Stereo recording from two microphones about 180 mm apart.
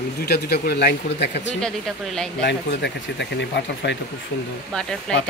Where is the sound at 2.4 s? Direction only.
70° left (ahead or behind).